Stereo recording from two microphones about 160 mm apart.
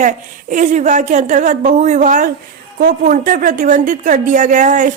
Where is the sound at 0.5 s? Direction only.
50° right (ahead or behind).